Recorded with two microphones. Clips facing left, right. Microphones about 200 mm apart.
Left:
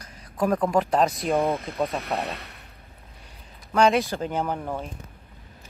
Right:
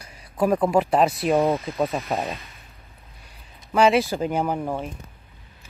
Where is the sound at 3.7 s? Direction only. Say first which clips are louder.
Right 2 dB; 5° right (ahead or behind).